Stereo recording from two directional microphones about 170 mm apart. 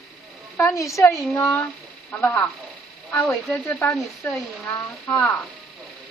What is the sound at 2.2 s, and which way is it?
Speech, 5° left (ahead or behind).